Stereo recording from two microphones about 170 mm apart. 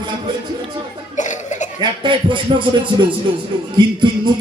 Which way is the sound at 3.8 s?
25° right (ahead or behind).